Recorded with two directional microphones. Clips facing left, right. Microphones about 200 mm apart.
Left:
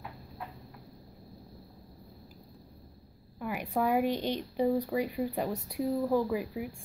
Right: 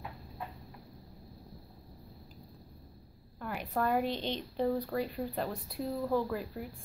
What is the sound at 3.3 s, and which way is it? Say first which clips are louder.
A woman's voice: left 3 dB; 10° left (ahead or behind).